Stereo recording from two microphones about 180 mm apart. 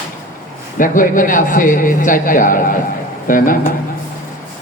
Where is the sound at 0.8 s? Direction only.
50° left (ahead or behind).